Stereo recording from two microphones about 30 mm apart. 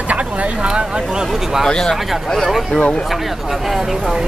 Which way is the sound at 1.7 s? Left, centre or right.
Left.